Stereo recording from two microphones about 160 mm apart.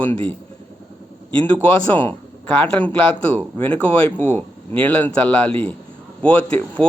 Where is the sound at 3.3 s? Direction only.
15° left (ahead or behind).